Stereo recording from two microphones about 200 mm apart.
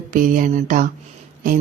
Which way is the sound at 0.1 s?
40° right (ahead or behind).